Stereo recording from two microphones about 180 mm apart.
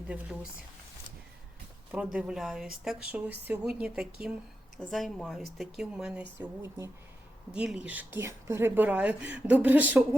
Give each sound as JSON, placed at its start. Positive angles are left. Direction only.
{"t": 1.9, "sound": "speech", "side_deg": -5}
{"t": 6.4, "sound": "speech", "side_deg": -15}
{"t": 7.5, "sound": "speech", "side_deg": -5}